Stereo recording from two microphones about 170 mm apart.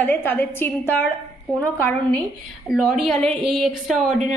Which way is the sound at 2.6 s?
Centre (ahead or behind).